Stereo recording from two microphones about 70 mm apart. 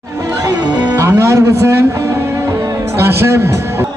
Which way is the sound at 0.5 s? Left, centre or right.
Right.